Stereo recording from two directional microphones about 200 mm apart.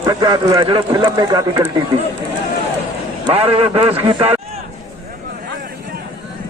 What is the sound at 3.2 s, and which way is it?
A man's voice, 30° right (ahead or behind).